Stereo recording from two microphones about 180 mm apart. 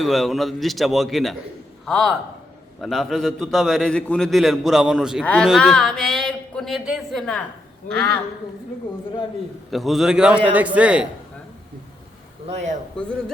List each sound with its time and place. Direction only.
0.0 s a man's voice: centre (ahead or behind)
5.2 s speech: 10° left (ahead or behind)
9.7 s a man's voice: centre (ahead or behind)
12.5 s a man's voice: 40° right (ahead or behind)
13.0 s a man's voice: 5° left (ahead or behind)